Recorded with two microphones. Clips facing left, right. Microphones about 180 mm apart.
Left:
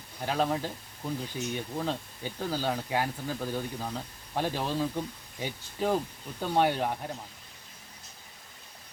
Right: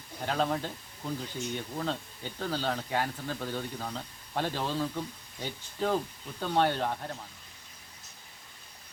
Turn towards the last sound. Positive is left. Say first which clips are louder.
# left 1 dB
turn(degrees=10)  # may be behind; listen again after turning